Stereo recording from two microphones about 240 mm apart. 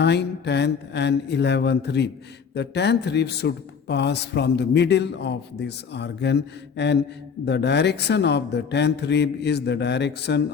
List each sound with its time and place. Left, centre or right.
0.0 s speech: left